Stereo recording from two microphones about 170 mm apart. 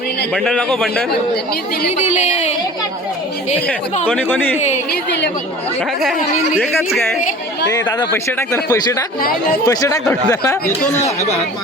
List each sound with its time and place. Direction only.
0.3 s a man's voice: 5° left (ahead or behind)
2.0 s speech: 40° left (ahead or behind)
4.0 s speech: 10° left (ahead or behind)
4.5 s speech: 40° left (ahead or behind)
4.9 s a woman's voice: 90° left
7.7 s speech: 20° left (ahead or behind)